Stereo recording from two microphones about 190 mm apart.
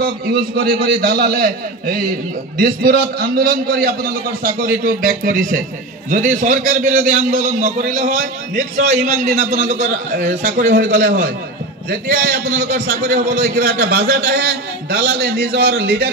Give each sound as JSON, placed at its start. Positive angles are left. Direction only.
{"t": 0.0, "sound": "a man's voice", "side_deg": -55}